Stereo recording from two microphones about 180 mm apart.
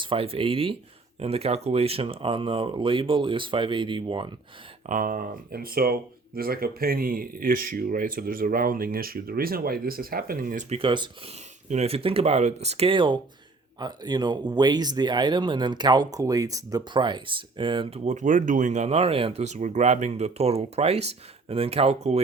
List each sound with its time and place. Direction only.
0.0 s speech: 30° right (ahead or behind)
4.9 s speech: 50° right (ahead or behind)
10.8 s speech: 25° right (ahead or behind)